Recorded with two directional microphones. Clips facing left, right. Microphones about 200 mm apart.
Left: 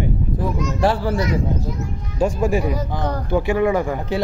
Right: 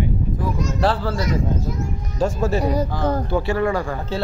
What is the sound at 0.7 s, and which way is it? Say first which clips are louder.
Speech: left 3 dB; 15° left (ahead or behind).